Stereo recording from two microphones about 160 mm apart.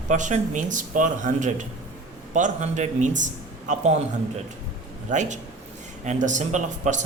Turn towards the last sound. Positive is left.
turn(degrees=-50)  # may be behind; listen again after turning